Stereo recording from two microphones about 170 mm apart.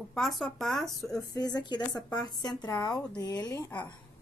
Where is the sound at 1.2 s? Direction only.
20° left (ahead or behind).